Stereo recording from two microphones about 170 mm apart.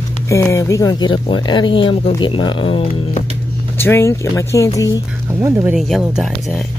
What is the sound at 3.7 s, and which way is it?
Speech, 15° left (ahead or behind).